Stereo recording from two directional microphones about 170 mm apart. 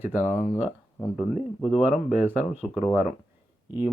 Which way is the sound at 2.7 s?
5° right (ahead or behind).